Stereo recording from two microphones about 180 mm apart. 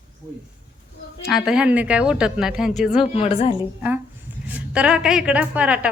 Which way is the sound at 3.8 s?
10° right (ahead or behind).